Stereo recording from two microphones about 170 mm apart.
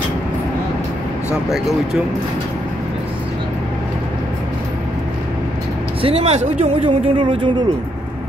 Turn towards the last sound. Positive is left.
turn(degrees=-25)  # may be behind; listen again after turning